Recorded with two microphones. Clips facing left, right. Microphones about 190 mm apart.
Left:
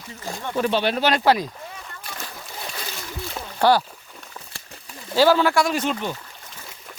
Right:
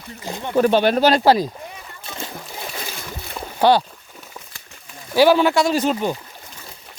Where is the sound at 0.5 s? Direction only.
45° right (ahead or behind).